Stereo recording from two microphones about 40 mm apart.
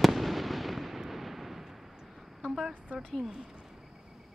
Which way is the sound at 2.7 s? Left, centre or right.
Right.